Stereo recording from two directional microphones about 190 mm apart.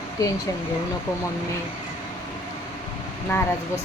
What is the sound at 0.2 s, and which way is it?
Speech, 15° left (ahead or behind).